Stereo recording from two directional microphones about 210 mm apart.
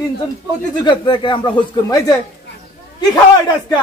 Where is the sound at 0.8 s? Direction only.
25° left (ahead or behind).